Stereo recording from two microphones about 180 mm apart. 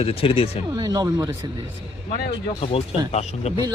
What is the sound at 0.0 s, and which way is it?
Speech, 30° left (ahead or behind).